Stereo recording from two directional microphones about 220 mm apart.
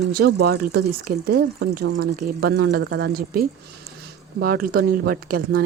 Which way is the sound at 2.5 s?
50° right (ahead or behind).